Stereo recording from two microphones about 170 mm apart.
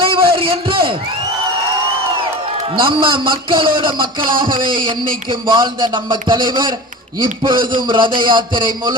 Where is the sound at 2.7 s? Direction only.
30° right (ahead or behind).